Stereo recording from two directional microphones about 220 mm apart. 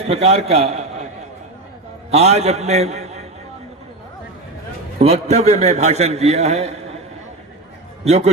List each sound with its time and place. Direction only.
0.0 s a man's voice: 30° right (ahead or behind)
2.0 s a man's voice: 30° right (ahead or behind)
4.9 s a man's voice: 30° right (ahead or behind)
8.0 s a man's voice: 30° right (ahead or behind)